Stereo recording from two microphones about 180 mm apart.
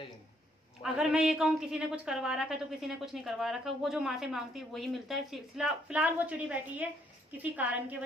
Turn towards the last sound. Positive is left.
turn(degrees=-10)  # may be behind; listen again after turning